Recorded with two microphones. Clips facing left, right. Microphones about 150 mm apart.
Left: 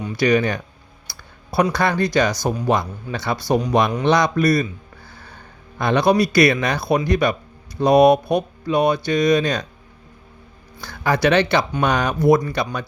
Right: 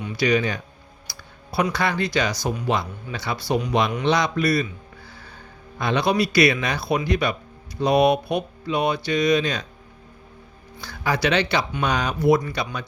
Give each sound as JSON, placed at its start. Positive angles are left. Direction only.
{"t": 0.0, "sound": "speech", "side_deg": 50}
{"t": 1.0, "sound": "a sound", "side_deg": 45}
{"t": 1.7, "sound": "speech", "side_deg": 45}
{"t": 5.8, "sound": "speech", "side_deg": 45}
{"t": 10.8, "sound": "speech", "side_deg": 50}